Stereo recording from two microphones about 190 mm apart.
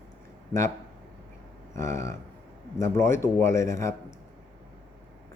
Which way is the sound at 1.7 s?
15° left (ahead or behind).